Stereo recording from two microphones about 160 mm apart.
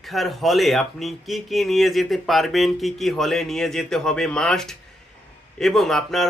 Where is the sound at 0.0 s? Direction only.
Centre (ahead or behind).